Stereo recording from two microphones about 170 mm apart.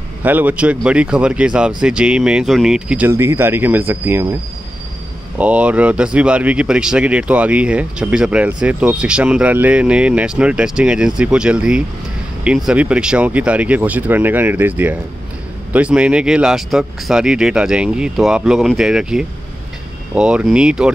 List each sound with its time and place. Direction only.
0.2 s speech: 10° right (ahead or behind)
5.4 s speech: 10° right (ahead or behind)